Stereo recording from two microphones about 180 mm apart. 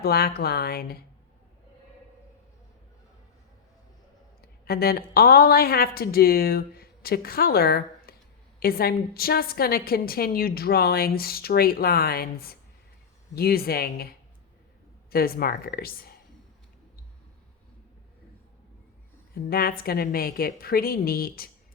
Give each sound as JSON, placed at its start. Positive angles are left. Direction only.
{"t": 0.0, "sound": "a woman's voice", "side_deg": 60}
{"t": 4.4, "sound": "a sound", "side_deg": 60}
{"t": 5.1, "sound": "a woman's voice", "side_deg": 55}
{"t": 19.3, "sound": "a woman's voice", "side_deg": 55}